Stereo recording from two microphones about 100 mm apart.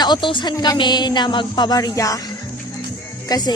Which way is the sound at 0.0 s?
50° left (ahead or behind).